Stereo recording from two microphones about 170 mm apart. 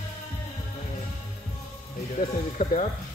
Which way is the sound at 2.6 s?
45° left (ahead or behind).